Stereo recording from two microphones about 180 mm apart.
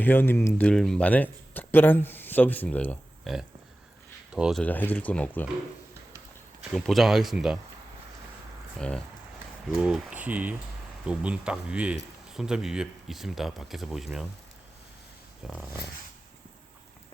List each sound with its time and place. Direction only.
0.0 s speech: 10° left (ahead or behind)
4.3 s speech: 5° right (ahead or behind)
4.6 s speech: 10° left (ahead or behind)
6.7 s speech: centre (ahead or behind)
8.8 s speech: 5° left (ahead or behind)
15.4 s speech: 5° right (ahead or behind)